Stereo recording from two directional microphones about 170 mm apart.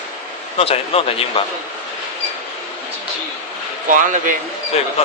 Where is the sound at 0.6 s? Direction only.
35° left (ahead or behind).